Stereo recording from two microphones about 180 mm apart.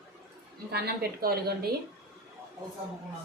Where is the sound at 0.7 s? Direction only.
60° right (ahead or behind).